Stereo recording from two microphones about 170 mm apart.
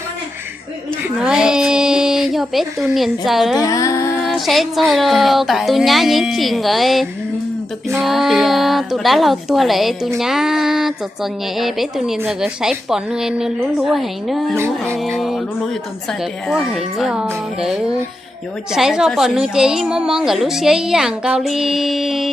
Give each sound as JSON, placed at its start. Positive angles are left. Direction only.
{"t": 1.2, "sound": "a sound", "side_deg": -5}
{"t": 2.9, "sound": "speech", "side_deg": 0}
{"t": 3.6, "sound": "music", "side_deg": 20}
{"t": 4.2, "sound": "speech", "side_deg": 0}
{"t": 14.5, "sound": "speech", "side_deg": -15}
{"t": 15.0, "sound": "speech", "side_deg": 0}
{"t": 16.5, "sound": "speech", "side_deg": 0}